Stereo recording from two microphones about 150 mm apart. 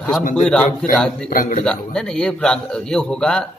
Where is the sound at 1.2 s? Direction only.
60° left (ahead or behind).